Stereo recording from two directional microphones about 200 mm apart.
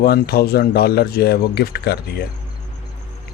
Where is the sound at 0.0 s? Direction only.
50° left (ahead or behind).